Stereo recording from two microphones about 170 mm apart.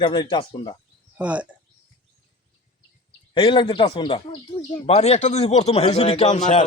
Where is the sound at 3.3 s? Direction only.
30° left (ahead or behind).